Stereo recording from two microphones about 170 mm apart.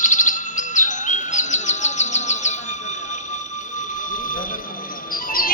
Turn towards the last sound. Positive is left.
turn(degrees=55)  # may be behind; listen again after turning